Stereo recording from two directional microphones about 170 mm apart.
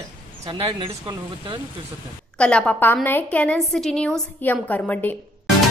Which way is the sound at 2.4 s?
5° left (ahead or behind).